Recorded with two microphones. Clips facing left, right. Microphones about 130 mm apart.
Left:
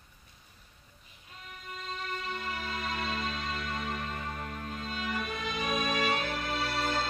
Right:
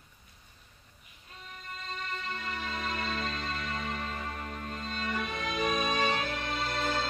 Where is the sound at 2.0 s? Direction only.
Centre (ahead or behind).